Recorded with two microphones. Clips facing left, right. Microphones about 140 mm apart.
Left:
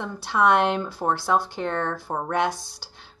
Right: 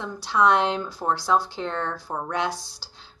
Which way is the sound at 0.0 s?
60° left (ahead or behind).